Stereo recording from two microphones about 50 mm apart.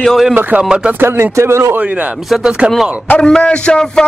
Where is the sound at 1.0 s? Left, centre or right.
Right.